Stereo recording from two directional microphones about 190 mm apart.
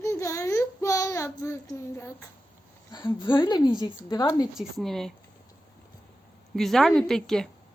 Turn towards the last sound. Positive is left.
turn(degrees=0)  # may be behind; listen again after turning